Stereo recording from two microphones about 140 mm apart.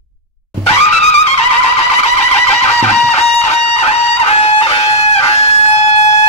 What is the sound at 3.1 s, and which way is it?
Music, 45° left (ahead or behind).